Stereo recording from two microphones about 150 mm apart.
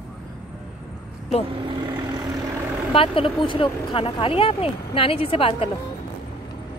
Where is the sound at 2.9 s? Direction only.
35° left (ahead or behind).